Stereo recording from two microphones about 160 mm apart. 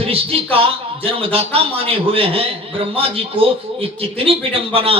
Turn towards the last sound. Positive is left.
turn(degrees=-35)  # may be behind; listen again after turning